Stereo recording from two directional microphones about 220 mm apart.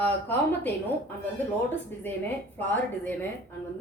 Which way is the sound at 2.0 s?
10° left (ahead or behind).